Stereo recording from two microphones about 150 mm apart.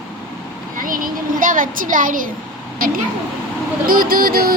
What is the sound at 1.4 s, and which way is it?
Speech, 65° right (ahead or behind).